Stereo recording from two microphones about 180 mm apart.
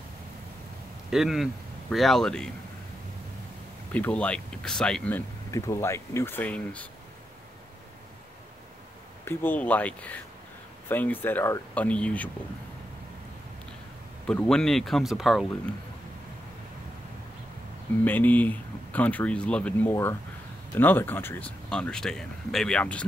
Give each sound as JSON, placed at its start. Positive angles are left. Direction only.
{"t": 1.1, "sound": "speech", "side_deg": 0}
{"t": 3.9, "sound": "speech", "side_deg": 5}
{"t": 9.2, "sound": "speech", "side_deg": 10}
{"t": 14.2, "sound": "speech", "side_deg": 5}
{"t": 18.0, "sound": "speech", "side_deg": 10}